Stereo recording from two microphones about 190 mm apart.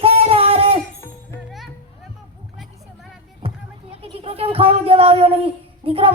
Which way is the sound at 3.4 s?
30° right (ahead or behind).